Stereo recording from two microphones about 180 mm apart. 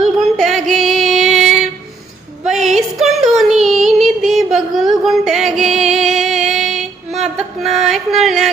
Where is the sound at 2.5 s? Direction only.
Centre (ahead or behind).